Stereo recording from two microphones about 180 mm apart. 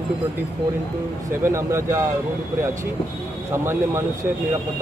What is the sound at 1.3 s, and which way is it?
Speech, 15° right (ahead or behind).